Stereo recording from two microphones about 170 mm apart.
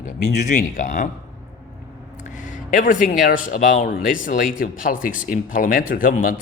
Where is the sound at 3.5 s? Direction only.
50° left (ahead or behind).